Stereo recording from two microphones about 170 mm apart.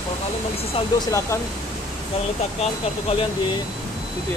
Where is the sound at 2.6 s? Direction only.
40° left (ahead or behind).